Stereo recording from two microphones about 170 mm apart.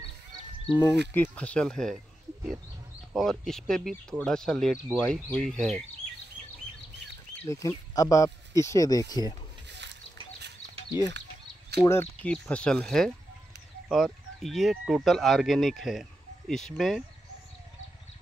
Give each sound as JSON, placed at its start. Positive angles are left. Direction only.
{"t": 0.7, "sound": "speech", "side_deg": 25}
{"t": 1.1, "sound": "speech", "side_deg": 10}
{"t": 3.1, "sound": "speech", "side_deg": 0}
{"t": 7.4, "sound": "speech", "side_deg": 20}
{"t": 9.7, "sound": "a sound", "side_deg": -90}
{"t": 11.8, "sound": "speech", "side_deg": 15}